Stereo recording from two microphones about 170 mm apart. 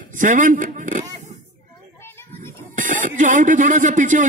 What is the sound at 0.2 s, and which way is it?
Speech, 50° right (ahead or behind).